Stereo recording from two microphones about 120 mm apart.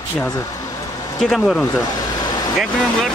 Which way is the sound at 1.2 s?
5° left (ahead or behind).